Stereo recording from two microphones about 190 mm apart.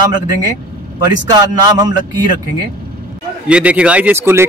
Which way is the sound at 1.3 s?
20° right (ahead or behind).